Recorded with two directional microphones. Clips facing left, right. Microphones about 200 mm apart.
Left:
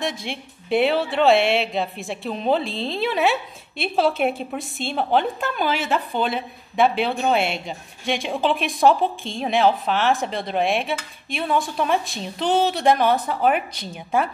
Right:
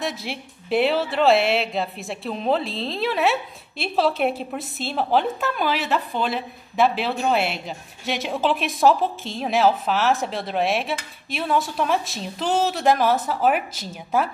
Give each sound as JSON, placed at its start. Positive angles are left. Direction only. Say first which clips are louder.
{"t": 0.0, "sound": "speech", "louder": "left 1 dB", "side_deg": -5}